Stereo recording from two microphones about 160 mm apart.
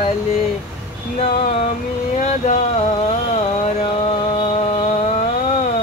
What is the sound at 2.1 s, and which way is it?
Speech, 50° left (ahead or behind).